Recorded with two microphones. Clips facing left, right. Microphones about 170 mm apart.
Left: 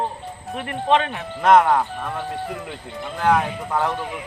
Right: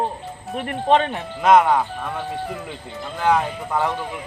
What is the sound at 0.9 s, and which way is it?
Speech, 35° right (ahead or behind).